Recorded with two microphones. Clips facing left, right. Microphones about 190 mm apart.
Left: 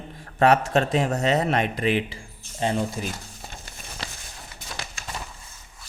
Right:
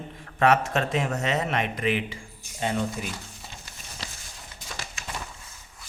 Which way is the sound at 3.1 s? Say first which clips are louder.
Left 1 dB; 45° left (ahead or behind).